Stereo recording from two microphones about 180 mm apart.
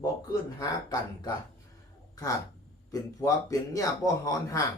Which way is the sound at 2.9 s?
20° left (ahead or behind).